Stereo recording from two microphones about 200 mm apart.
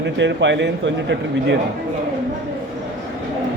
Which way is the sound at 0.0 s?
65° right (ahead or behind).